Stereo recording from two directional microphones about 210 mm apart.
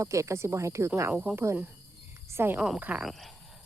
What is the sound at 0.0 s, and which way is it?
Speech, 15° right (ahead or behind).